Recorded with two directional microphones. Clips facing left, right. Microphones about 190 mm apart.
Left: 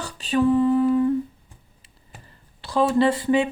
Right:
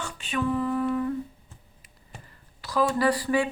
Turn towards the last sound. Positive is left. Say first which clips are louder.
# left 4 dB
turn(degrees=20)  # may be behind; listen again after turning